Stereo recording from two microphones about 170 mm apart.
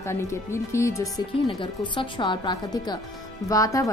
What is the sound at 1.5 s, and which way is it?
Speech, 30° left (ahead or behind).